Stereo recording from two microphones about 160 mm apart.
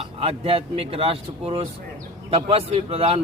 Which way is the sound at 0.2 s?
35° right (ahead or behind).